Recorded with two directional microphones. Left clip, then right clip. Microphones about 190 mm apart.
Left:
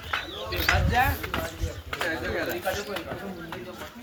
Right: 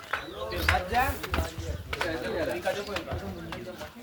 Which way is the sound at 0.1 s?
50° right (ahead or behind).